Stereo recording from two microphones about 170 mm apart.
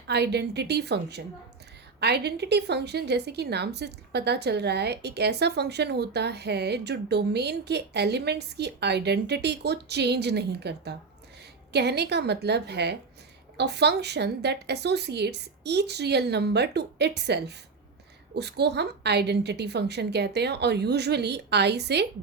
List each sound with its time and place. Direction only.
0.1 s a woman's voice: 75° right (ahead or behind)